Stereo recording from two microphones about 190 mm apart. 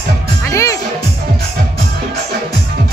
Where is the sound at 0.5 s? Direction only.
15° left (ahead or behind).